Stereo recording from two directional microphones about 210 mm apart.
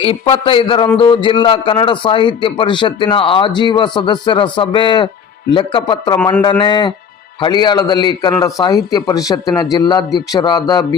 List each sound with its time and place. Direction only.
0.0 s a man's voice: 25° left (ahead or behind)